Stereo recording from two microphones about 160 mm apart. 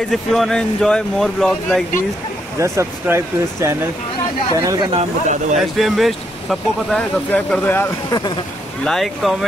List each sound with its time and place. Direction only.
0.1 s speech: centre (ahead or behind)
2.6 s speech: 15° right (ahead or behind)
4.9 s speech: 45° right (ahead or behind)
5.6 s speech: centre (ahead or behind)
8.8 s speech: centre (ahead or behind)